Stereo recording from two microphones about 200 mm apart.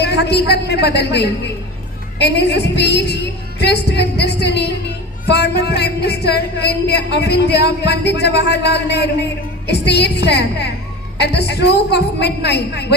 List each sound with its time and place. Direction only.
0.0 s music: 55° left (ahead or behind)